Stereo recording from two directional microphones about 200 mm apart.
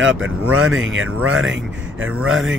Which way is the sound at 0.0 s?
75° right (ahead or behind).